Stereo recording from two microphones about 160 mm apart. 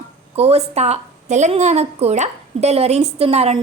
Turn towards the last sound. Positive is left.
turn(degrees=-40)  # may be behind; listen again after turning